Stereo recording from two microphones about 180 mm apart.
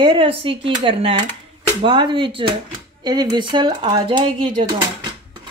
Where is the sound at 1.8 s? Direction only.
25° right (ahead or behind).